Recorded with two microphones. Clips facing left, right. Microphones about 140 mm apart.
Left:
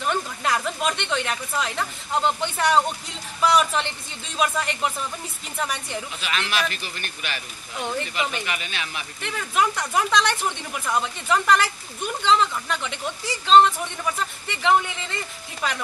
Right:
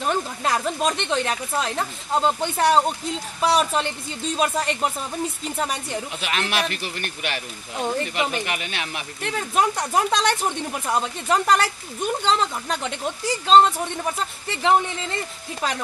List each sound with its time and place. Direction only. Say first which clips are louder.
0.0 s speech: right 2 dB; 30° right (ahead or behind)
6.7 s speech: right 5 dB; 60° right (ahead or behind)
7.7 s speech: right 3 dB; 35° right (ahead or behind)
8.5 s speech: right 2 dB; 60° right (ahead or behind)
9.2 s speech: right 2 dB; 35° right (ahead or behind)